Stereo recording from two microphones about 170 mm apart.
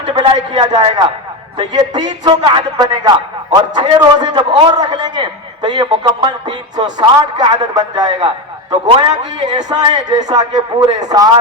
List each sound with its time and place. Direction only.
0.1 s a man's voice: 25° right (ahead or behind)